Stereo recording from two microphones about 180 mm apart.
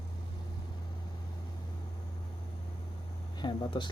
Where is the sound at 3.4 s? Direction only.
25° left (ahead or behind).